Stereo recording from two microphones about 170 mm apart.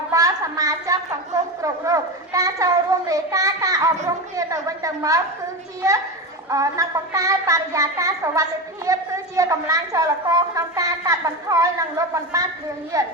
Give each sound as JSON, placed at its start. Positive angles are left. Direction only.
{"t": 0.1, "sound": "a woman's voice", "side_deg": -20}
{"t": 6.5, "sound": "a woman's voice", "side_deg": -20}